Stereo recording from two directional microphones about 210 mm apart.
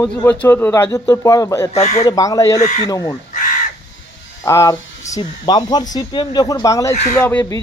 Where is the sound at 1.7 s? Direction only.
30° left (ahead or behind).